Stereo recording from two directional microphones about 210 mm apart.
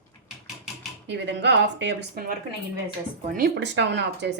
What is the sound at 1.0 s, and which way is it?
Speech, 55° right (ahead or behind).